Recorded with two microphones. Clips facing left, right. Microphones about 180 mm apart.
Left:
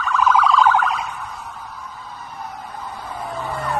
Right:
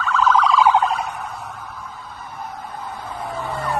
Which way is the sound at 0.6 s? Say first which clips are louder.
Right 1 dB; 15° right (ahead or behind).